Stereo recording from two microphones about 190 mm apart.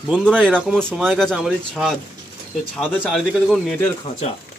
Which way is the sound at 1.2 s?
Centre (ahead or behind).